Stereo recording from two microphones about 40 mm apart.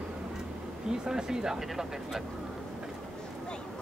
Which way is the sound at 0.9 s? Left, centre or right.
Centre.